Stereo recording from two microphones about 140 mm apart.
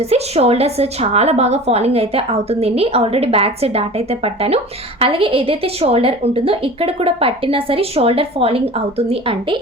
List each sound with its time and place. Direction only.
0.0 s a woman's voice: 45° right (ahead or behind)